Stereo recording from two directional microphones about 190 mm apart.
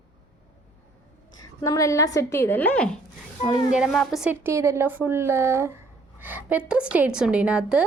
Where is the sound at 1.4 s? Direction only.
20° left (ahead or behind).